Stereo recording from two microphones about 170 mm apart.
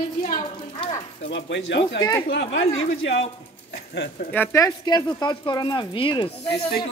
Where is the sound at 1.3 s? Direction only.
90° left.